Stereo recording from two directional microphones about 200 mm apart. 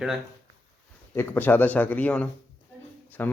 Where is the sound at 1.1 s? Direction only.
10° left (ahead or behind).